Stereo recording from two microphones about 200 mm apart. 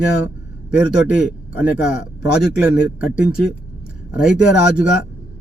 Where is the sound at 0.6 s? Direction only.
5° right (ahead or behind).